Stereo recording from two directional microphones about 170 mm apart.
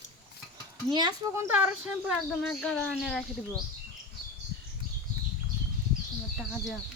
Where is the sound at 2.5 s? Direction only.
5° left (ahead or behind).